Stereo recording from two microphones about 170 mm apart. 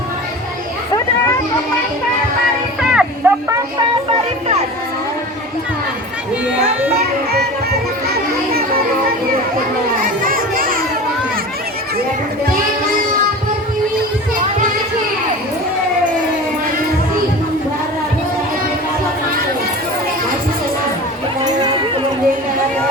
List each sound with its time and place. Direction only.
2.9 s a sound: 5° right (ahead or behind)
7.3 s music: 70° right (ahead or behind)
10.0 s music: 55° right (ahead or behind)